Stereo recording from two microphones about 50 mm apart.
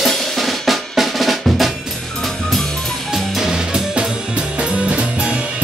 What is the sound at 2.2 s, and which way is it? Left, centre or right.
Music, centre.